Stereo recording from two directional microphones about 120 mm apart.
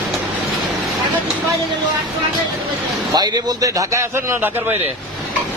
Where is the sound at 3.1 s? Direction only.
35° right (ahead or behind); by 4.7 s 20° right (ahead or behind).